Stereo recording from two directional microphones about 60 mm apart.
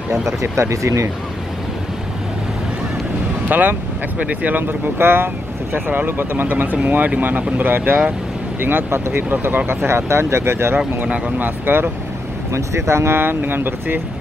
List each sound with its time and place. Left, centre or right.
0.4 s speech: right
3.4 s speech: right
9.8 s speech: right
12.5 s speech: right